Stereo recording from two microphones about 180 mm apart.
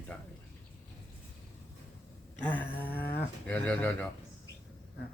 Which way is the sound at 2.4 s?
10° left (ahead or behind).